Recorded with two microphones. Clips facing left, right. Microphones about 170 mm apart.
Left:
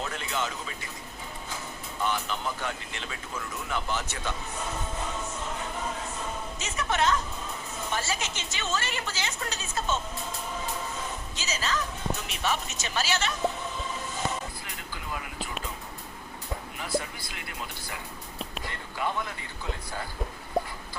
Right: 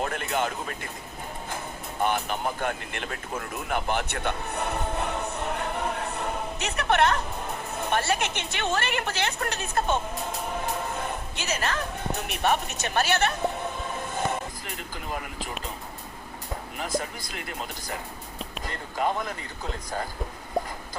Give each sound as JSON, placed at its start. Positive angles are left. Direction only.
{"t": 0.0, "sound": "speech", "side_deg": -55}
{"t": 2.0, "sound": "speech", "side_deg": -55}
{"t": 17.0, "sound": "speech", "side_deg": -45}